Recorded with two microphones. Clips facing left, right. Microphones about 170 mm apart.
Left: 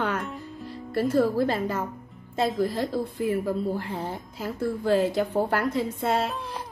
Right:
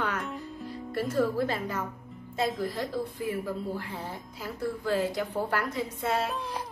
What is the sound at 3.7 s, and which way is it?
Speech, 30° left (ahead or behind).